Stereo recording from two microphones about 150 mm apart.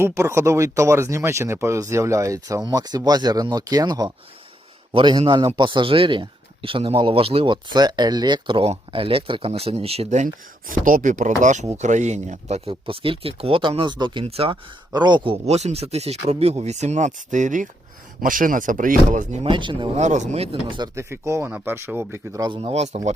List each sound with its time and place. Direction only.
0.0 s a man's voice: 20° right (ahead or behind); by 19.4 s 55° right (ahead or behind)
19.4 s a man's voice: 35° right (ahead or behind)
20.0 s speech: 50° right (ahead or behind); by 20.9 s 30° right (ahead or behind)
20.9 s speech: 20° right (ahead or behind); by 23.0 s 45° right (ahead or behind)